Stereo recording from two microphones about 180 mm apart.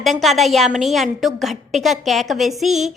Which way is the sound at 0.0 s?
Centre (ahead or behind).